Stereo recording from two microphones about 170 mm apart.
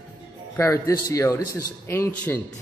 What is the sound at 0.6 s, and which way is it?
A man's voice, 15° left (ahead or behind).